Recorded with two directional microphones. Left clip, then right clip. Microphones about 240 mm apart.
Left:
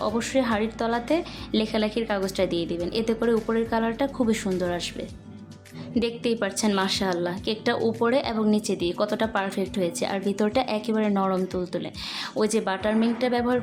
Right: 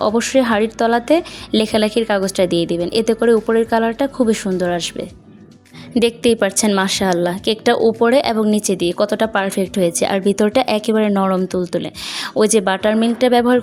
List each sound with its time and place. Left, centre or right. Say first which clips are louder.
0.0 s a woman's voice: right 10 dB; right